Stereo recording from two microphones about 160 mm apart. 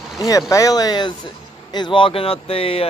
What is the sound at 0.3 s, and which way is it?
Speech, 20° left (ahead or behind).